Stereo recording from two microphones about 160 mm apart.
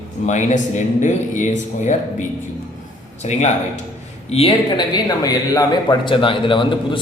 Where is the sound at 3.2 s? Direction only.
45° left (ahead or behind).